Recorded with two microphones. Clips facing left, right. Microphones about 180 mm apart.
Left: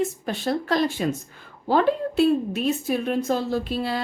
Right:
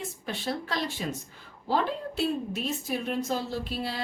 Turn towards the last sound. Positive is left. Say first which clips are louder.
# left 7 dB
turn(degrees=55)  # may be behind; listen again after turning